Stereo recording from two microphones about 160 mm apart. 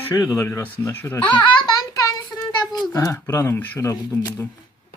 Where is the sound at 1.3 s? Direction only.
30° left (ahead or behind).